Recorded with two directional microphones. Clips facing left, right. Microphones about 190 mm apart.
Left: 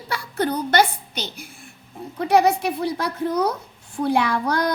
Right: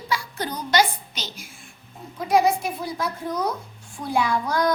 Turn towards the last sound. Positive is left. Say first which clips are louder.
# left 2 dB
turn(degrees=65)  # may be behind; listen again after turning